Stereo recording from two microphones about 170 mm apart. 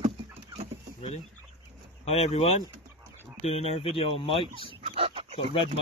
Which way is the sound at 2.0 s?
40° left (ahead or behind).